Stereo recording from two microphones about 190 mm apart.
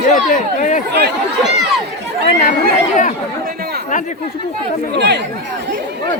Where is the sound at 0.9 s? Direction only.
60° right (ahead or behind).